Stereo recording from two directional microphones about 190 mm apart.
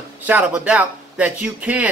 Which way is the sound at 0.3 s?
5° right (ahead or behind).